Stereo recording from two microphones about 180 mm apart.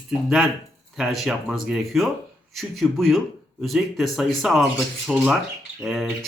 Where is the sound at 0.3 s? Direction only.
Centre (ahead or behind).